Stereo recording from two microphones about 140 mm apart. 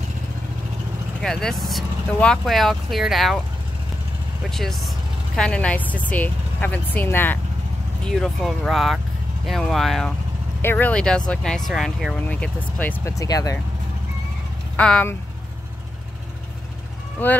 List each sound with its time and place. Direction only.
1.2 s speech: 5° left (ahead or behind)
4.5 s speech: 5° left (ahead or behind)
8.0 s speech: centre (ahead or behind)
10.6 s speech: 15° left (ahead or behind); by 12.2 s centre (ahead or behind)
12.3 s speech: 10° left (ahead or behind)
13.2 s speech: 25° left (ahead or behind)
14.8 s speech: 10° left (ahead or behind)